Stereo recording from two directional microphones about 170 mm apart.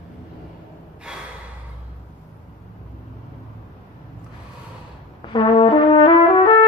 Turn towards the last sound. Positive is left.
turn(degrees=30)  # may be behind; listen again after turning